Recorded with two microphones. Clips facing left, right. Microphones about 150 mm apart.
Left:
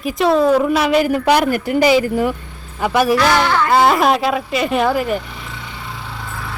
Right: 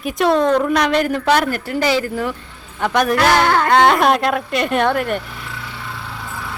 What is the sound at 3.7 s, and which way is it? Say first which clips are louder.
Speech: left 1 dB; 5° left (ahead or behind).